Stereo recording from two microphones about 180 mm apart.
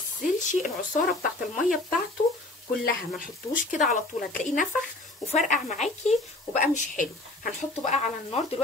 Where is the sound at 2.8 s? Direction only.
55° left (ahead or behind).